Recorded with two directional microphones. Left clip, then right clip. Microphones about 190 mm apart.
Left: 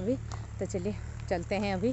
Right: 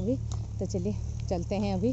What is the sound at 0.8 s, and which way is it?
Speech, centre (ahead or behind).